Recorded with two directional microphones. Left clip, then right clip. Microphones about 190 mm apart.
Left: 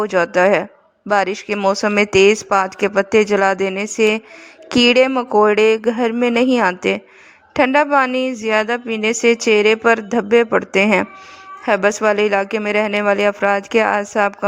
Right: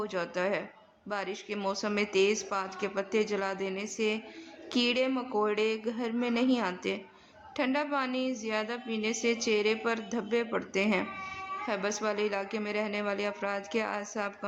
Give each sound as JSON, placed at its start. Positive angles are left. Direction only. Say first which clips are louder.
{"t": 0.0, "sound": "a woman's voice", "louder": "left 18 dB", "side_deg": 50}